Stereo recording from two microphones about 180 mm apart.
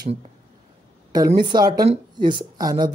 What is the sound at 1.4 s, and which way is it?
Speech, 25° right (ahead or behind).